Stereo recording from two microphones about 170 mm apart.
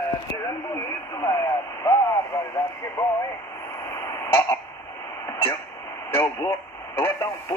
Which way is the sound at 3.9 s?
15° left (ahead or behind).